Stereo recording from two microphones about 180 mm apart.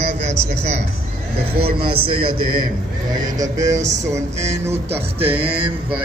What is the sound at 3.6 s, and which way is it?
Speech, 40° right (ahead or behind).